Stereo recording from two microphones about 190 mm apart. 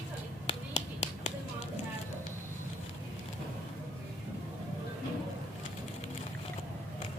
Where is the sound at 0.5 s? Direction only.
30° left (ahead or behind).